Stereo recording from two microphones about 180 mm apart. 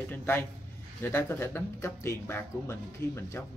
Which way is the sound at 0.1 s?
10° left (ahead or behind).